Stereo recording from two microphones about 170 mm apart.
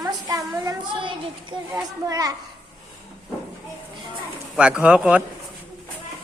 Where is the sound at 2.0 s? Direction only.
20° right (ahead or behind).